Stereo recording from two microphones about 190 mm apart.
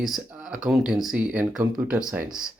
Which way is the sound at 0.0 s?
Centre (ahead or behind).